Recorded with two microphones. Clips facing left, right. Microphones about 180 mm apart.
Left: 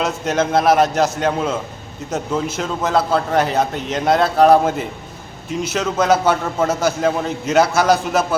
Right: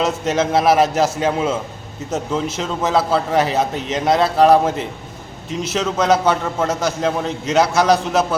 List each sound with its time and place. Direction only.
0.0 s a man's voice: centre (ahead or behind)